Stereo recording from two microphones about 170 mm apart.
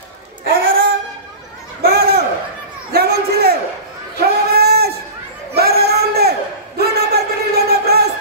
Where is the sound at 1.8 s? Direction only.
70° right (ahead or behind).